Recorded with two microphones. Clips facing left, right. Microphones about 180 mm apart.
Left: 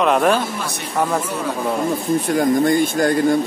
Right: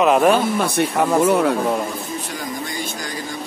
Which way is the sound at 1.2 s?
60° right (ahead or behind).